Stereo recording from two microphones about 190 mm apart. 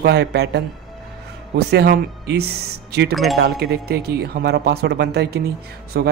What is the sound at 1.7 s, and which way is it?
Speech, 60° right (ahead or behind).